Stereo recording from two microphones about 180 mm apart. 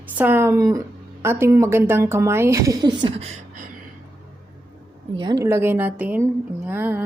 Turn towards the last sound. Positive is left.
turn(degrees=-10)  # may be behind; listen again after turning